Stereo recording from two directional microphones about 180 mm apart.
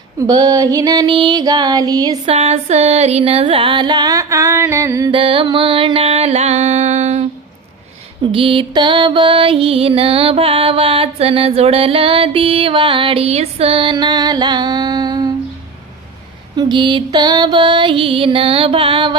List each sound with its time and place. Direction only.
0.2 s music: 20° right (ahead or behind)
2.2 s music: 35° right (ahead or behind); by 5.1 s 15° right (ahead or behind)
5.1 s mantra: 30° right (ahead or behind)
8.3 s mantra: 30° right (ahead or behind)
16.6 s music: 25° right (ahead or behind)